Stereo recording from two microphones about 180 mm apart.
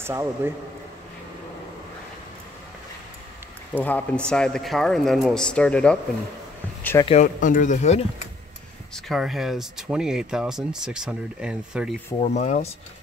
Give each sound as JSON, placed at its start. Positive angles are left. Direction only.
{"t": 0.0, "sound": "a man's voice", "side_deg": -15}
{"t": 3.7, "sound": "speech", "side_deg": 10}
{"t": 7.1, "sound": "speech", "side_deg": 40}
{"t": 8.9, "sound": "speech", "side_deg": 0}
{"t": 12.2, "sound": "speech", "side_deg": 40}